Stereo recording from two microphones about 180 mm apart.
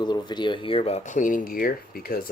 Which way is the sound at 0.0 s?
25° left (ahead or behind).